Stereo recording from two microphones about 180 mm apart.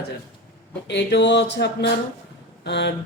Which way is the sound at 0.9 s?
75° left (ahead or behind).